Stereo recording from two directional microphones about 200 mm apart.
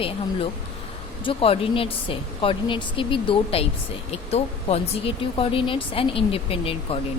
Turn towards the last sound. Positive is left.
turn(degrees=30)  # may be behind; listen again after turning